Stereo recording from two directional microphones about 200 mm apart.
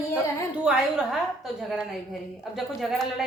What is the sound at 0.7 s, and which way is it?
Speech, 5° right (ahead or behind).